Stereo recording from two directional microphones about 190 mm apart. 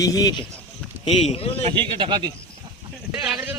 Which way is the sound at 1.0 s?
30° left (ahead or behind).